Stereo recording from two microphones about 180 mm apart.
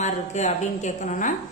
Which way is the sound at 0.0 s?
40° left (ahead or behind).